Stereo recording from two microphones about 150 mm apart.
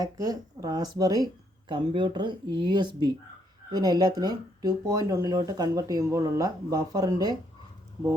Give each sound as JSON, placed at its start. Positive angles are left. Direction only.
{"t": 0.0, "sound": "speech", "side_deg": -25}